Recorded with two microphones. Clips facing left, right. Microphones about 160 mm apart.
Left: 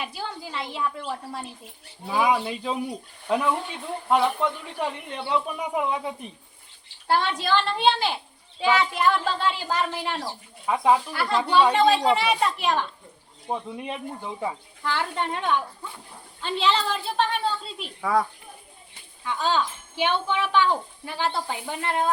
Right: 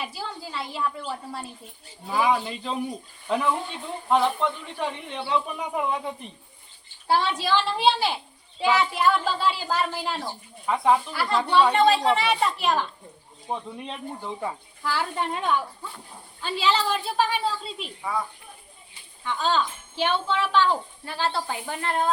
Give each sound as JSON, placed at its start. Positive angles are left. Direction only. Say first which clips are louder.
{"t": 0.0, "sound": "speech", "louder": "left 1 dB", "side_deg": 0}
{"t": 7.1, "sound": "speech", "louder": "even", "side_deg": -5}
{"t": 10.2, "sound": "speech", "louder": "even", "side_deg": 10}
{"t": 13.5, "sound": "speech", "louder": "left 2 dB", "side_deg": 10}
{"t": 14.8, "sound": "speech", "louder": "even", "side_deg": -5}
{"t": 18.0, "sound": "a child's voice", "louder": "left 6 dB", "side_deg": 75}
{"t": 19.2, "sound": "speech", "louder": "even", "side_deg": 10}